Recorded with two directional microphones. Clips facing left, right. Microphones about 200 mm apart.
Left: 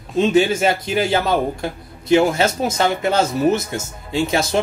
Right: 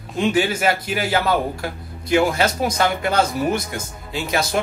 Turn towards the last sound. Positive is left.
turn(degrees=25)  # may be behind; listen again after turning